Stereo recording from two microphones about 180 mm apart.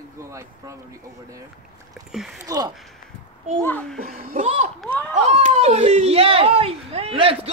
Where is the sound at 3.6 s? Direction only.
10° left (ahead or behind).